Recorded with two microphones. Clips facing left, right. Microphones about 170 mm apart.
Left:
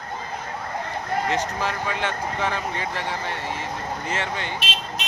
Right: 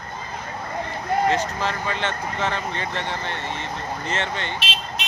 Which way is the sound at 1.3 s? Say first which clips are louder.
Right 1 dB; 15° left (ahead or behind).